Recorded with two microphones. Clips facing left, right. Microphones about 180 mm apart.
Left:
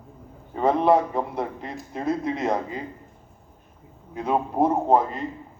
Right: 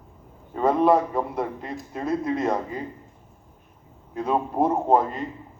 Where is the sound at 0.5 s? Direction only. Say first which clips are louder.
Even; 20° left (ahead or behind).